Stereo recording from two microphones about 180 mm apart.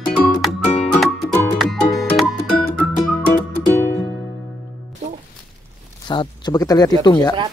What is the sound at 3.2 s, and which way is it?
Music, 10° left (ahead or behind).